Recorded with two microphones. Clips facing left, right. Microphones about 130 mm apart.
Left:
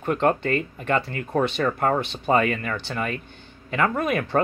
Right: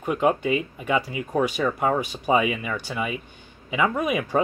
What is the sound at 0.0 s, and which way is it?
Speech, 5° right (ahead or behind).